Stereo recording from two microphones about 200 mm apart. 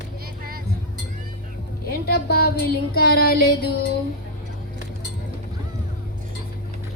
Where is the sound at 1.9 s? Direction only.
50° left (ahead or behind).